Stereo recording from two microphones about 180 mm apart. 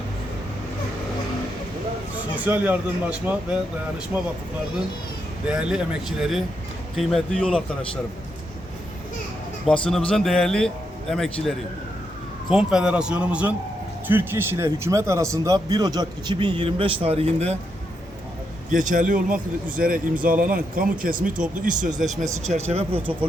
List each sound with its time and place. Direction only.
2.4 s speech: 10° right (ahead or behind)
5.5 s speech: 5° right (ahead or behind)
9.6 s speech: 5° left (ahead or behind); by 17.6 s 35° right (ahead or behind)
18.7 s speech: 45° right (ahead or behind)